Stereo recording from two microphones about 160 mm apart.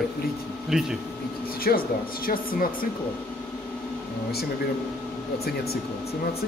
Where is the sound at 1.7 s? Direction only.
65° left (ahead or behind).